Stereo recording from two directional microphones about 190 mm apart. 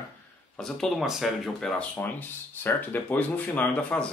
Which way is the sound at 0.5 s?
5° left (ahead or behind).